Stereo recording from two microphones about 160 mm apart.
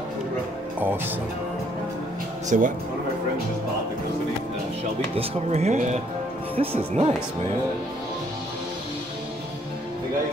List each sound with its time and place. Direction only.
2.5 s speech: 50° right (ahead or behind)
5.1 s speech: 40° right (ahead or behind)